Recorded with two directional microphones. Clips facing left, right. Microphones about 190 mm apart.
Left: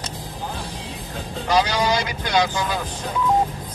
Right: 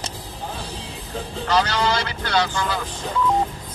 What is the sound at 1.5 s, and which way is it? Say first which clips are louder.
Speech: left 1 dB; 10° left (ahead or behind).